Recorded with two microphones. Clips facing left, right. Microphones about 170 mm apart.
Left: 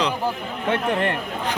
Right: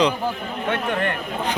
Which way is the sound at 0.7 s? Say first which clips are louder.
Left 2 dB; 30° left (ahead or behind).